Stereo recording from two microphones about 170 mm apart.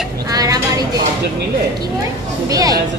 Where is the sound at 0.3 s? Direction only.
20° right (ahead or behind).